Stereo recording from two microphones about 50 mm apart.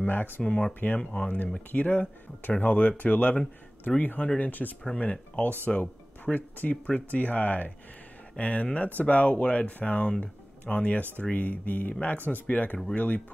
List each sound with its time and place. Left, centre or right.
0.0 s speech: left
0.4 s speech: left
0.7 s speech: left
10.0 s speech: left